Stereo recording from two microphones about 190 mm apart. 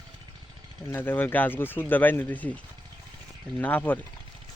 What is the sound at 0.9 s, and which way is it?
Speech, 10° left (ahead or behind).